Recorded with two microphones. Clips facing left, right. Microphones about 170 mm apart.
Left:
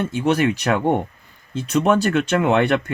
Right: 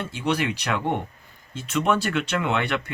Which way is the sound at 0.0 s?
45° left (ahead or behind).